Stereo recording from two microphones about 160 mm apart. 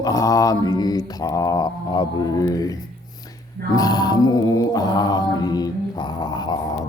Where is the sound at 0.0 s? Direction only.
20° left (ahead or behind).